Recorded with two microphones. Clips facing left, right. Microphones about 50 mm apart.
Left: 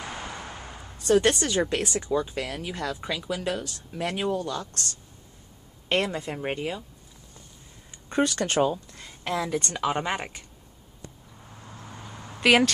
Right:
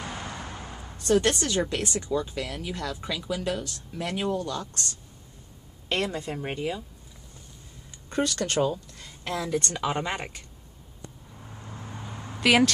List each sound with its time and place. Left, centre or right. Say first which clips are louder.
0.9 s a woman's voice: left 2 dB; centre
4.4 s speech: left 1 dB; centre
5.9 s a woman's voice: left 2 dB; centre
8.1 s speech: left 2 dB; left
9.8 s a woman's voice: left 2 dB; centre
12.4 s speech: left 1 dB; centre